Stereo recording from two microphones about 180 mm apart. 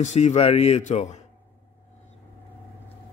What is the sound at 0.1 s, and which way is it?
Speech, 35° left (ahead or behind).